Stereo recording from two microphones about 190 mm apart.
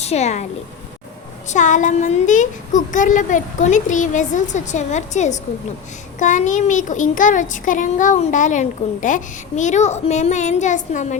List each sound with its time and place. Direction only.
0.0 s speech: 35° left (ahead or behind)
1.5 s a child's voice: 40° left (ahead or behind)